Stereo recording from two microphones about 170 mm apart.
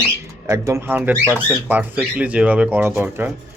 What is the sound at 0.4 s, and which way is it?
Speech, 15° right (ahead or behind).